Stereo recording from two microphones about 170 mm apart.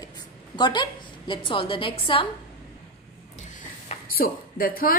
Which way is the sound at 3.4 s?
45° left (ahead or behind).